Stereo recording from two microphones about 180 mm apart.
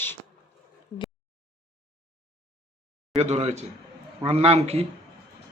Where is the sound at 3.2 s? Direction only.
35° right (ahead or behind).